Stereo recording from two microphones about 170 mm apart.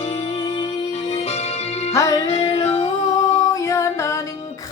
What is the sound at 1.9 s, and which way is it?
Music, 20° left (ahead or behind).